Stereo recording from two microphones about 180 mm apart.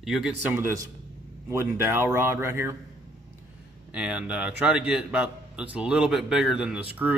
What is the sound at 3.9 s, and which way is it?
A man's voice, 5° right (ahead or behind).